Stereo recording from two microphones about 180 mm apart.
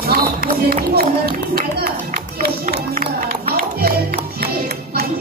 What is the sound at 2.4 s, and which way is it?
Music, 55° right (ahead or behind).